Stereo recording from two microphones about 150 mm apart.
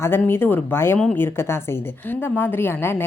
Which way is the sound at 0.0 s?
15° left (ahead or behind).